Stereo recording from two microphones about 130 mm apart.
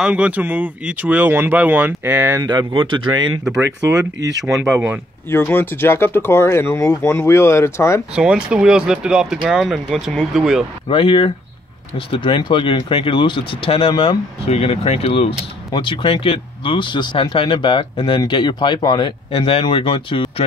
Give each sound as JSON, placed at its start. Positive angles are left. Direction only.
{"t": 0.0, "sound": "speech", "side_deg": -10}
{"t": 2.3, "sound": "speech", "side_deg": -35}
{"t": 3.9, "sound": "speech", "side_deg": -25}
{"t": 5.3, "sound": "speech", "side_deg": 15}
{"t": 8.1, "sound": "speech", "side_deg": -5}
{"t": 10.9, "sound": "speech", "side_deg": 40}
{"t": 19.3, "sound": "speech", "side_deg": 45}